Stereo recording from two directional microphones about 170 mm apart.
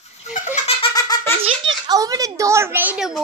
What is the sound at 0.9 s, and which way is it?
Giggle, 20° left (ahead or behind).